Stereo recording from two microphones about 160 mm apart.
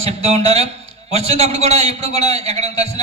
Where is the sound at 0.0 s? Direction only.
40° right (ahead or behind).